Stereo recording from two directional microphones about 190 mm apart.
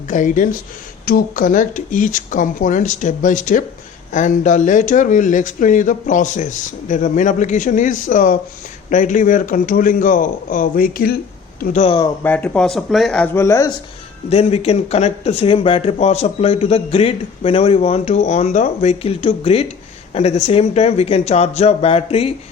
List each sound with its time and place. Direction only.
0.1 s speech: 45° left (ahead or behind)
11.6 s speech: 40° left (ahead or behind)
12.2 s speech: 10° left (ahead or behind)
14.3 s speech: 35° left (ahead or behind)